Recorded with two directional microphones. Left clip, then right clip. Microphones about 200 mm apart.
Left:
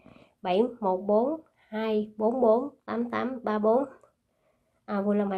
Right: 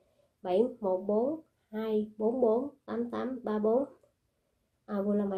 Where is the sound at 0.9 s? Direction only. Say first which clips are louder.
Left 5 dB; 40° left (ahead or behind).